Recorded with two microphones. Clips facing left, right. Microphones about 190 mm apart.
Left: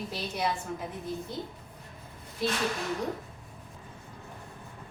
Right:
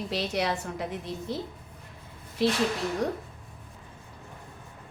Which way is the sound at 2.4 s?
80° right.